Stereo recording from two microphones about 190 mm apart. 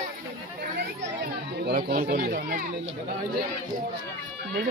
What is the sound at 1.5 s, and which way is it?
Speech, 55° right (ahead or behind).